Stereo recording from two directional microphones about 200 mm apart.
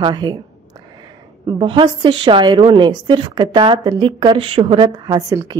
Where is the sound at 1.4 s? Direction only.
25° right (ahead or behind).